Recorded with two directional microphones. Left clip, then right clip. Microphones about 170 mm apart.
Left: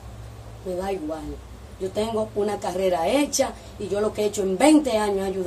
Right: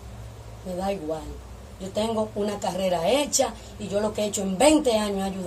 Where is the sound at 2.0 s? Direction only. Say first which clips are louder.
Left 1 dB; 15° right (ahead or behind).